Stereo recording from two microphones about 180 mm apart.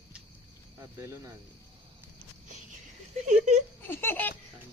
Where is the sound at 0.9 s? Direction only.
15° right (ahead or behind).